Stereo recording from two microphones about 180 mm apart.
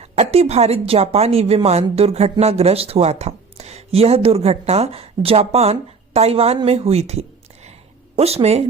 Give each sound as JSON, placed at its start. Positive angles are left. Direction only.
{"t": 0.0, "sound": "a woman's voice", "side_deg": -35}